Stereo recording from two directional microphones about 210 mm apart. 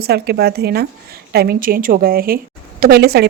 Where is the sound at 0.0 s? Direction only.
50° right (ahead or behind).